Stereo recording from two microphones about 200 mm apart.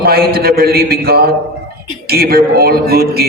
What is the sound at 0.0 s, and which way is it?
A man's voice, 50° right (ahead or behind).